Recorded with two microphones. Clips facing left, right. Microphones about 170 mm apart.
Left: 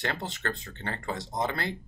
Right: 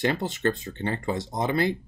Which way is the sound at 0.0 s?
10° right (ahead or behind).